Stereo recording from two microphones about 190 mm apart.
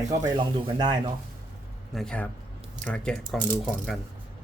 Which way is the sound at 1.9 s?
5° left (ahead or behind).